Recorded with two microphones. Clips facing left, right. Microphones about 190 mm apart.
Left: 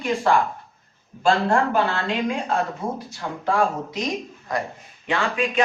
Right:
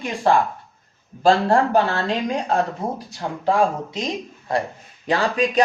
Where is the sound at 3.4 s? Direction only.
25° right (ahead or behind).